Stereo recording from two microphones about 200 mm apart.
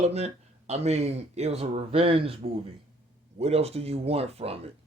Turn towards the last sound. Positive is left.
turn(degrees=-30)  # may be behind; listen again after turning